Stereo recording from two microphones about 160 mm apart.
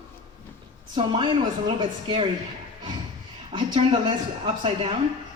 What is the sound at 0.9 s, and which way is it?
Speech, 30° right (ahead or behind).